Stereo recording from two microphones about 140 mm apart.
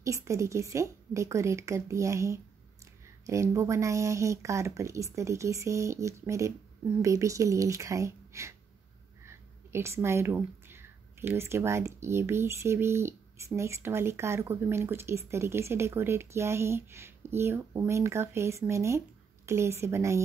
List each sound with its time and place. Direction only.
0.0 s speech: 20° right (ahead or behind)